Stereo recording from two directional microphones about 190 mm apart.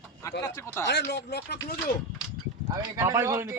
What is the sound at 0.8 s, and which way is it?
Speech, 65° left (ahead or behind).